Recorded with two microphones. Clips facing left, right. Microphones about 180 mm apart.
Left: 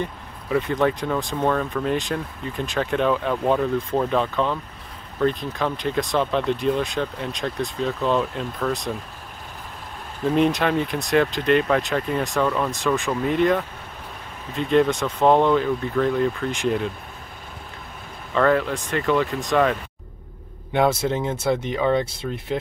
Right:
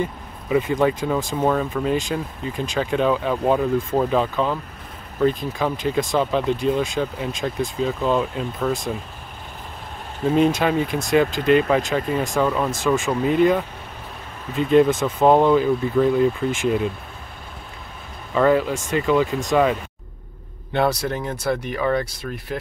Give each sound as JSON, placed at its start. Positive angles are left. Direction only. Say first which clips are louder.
{"t": 0.0, "sound": "speech", "louder": "right 3 dB", "side_deg": -5}
{"t": 10.2, "sound": "speech", "louder": "right 2 dB", "side_deg": 0}
{"t": 18.3, "sound": "speech", "louder": "right 2 dB", "side_deg": -5}
{"t": 20.7, "sound": "speech", "louder": "left 1 dB", "side_deg": 20}